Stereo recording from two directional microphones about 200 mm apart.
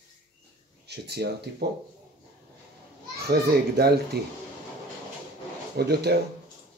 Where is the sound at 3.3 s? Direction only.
50° right (ahead or behind).